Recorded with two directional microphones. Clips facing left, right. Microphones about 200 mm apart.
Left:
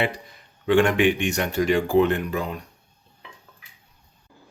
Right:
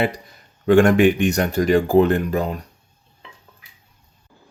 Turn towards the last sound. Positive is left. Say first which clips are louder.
# right 5 dB
turn(degrees=-40)  # may be behind; listen again after turning